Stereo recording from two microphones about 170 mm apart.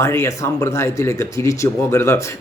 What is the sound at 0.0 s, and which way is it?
Speech, 15° left (ahead or behind).